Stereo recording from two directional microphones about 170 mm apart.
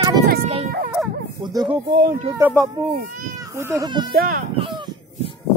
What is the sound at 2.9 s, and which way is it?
Speech, 60° right (ahead or behind).